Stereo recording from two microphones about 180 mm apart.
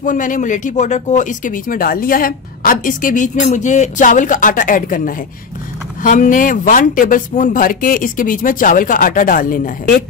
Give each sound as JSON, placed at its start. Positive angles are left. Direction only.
{"t": 0.0, "sound": "speech", "side_deg": 45}